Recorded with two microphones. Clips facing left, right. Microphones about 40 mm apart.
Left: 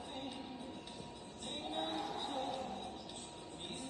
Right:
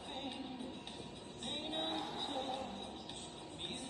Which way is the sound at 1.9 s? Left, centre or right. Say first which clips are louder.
Left 1 dB; right.